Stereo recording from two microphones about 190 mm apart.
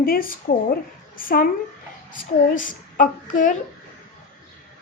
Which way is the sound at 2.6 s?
45° left (ahead or behind).